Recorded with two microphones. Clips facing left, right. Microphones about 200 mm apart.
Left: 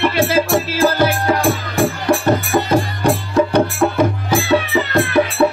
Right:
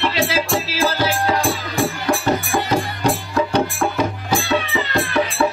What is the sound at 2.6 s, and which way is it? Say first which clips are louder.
Music: left 4 dB; 55° left (ahead or behind).